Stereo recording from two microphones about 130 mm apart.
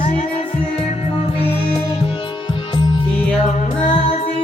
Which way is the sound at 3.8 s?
45° left (ahead or behind).